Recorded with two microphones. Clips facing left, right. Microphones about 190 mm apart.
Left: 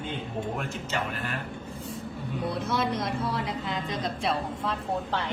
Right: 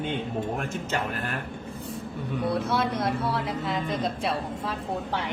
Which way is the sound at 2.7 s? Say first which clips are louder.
Right 2 dB; 60° right (ahead or behind).